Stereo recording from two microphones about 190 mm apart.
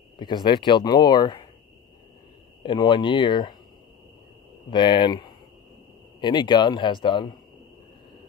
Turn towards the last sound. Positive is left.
turn(degrees=25)  # may be behind; listen again after turning